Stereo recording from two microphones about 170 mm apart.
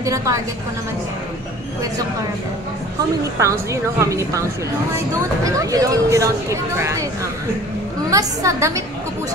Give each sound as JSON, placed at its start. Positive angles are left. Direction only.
{"t": 0.0, "sound": "speech", "side_deg": -20}
{"t": 3.3, "sound": "speech", "side_deg": -15}
{"t": 8.1, "sound": "speech", "side_deg": -20}